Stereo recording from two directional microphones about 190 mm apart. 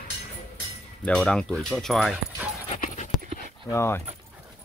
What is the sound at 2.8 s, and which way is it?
Pant, 45° left (ahead or behind).